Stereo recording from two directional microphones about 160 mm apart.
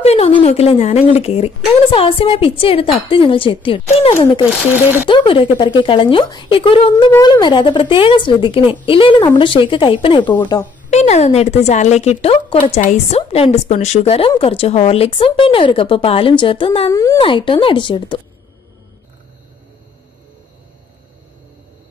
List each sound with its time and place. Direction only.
0.0 s speech: 40° left (ahead or behind)
10.9 s a woman's voice: 45° left (ahead or behind)
16.9 s speech: 20° left (ahead or behind)
17.2 s speech: 35° left (ahead or behind)